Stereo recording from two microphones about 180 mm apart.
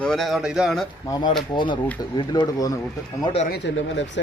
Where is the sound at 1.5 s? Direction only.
25° left (ahead or behind).